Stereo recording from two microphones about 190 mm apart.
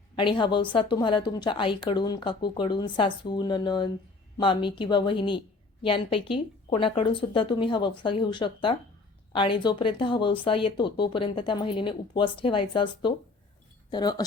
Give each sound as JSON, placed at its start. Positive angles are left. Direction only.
{"t": 0.2, "sound": "speech", "side_deg": 25}